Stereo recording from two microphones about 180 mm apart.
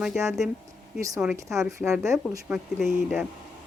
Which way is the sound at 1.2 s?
15° right (ahead or behind).